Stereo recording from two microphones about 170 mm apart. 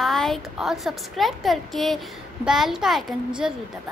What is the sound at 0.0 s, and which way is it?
A woman's voice, centre (ahead or behind).